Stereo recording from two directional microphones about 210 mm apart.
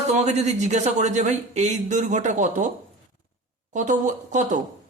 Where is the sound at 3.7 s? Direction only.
35° right (ahead or behind).